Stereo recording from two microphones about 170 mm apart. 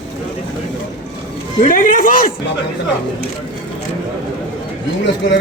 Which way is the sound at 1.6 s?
50° left (ahead or behind).